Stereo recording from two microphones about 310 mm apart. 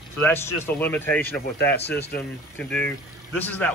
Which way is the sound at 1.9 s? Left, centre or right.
Left.